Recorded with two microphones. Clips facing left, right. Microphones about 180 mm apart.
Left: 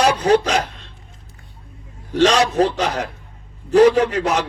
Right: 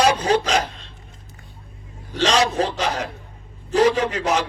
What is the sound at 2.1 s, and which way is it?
Speech, 55° left (ahead or behind).